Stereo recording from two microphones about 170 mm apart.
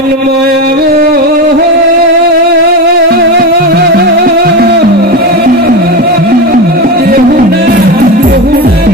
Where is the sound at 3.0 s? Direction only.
70° right (ahead or behind).